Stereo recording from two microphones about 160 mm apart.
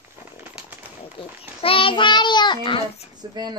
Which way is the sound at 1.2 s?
35° left (ahead or behind).